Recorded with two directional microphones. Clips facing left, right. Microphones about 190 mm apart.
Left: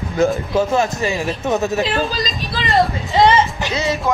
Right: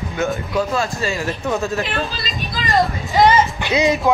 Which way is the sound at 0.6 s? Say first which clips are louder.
Left 3 dB; 20° left (ahead or behind).